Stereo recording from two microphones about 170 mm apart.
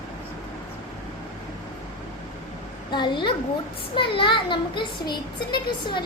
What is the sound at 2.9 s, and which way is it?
A child's voice, 25° left (ahead or behind).